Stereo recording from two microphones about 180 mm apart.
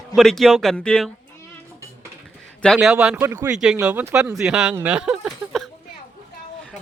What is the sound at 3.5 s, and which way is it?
Speech, 5° right (ahead or behind).